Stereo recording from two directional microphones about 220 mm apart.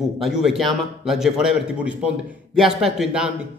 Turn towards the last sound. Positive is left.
turn(degrees=-5)  # may be behind; listen again after turning